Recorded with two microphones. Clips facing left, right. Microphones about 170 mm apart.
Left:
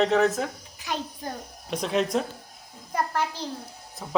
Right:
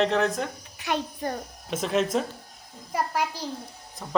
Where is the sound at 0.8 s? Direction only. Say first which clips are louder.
Right 4 dB; 65° right (ahead or behind).